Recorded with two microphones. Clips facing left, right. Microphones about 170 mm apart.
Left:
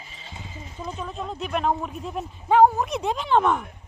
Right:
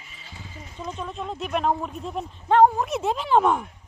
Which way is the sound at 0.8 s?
5° left (ahead or behind).